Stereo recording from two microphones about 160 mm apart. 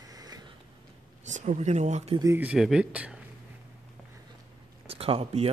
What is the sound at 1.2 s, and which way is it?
Speech, 50° right (ahead or behind).